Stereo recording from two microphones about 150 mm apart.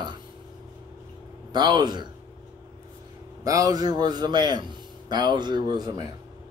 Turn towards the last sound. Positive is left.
turn(degrees=-25)  # may be behind; listen again after turning